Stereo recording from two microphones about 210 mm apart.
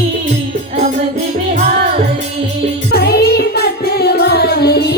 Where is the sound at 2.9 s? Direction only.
50° left (ahead or behind).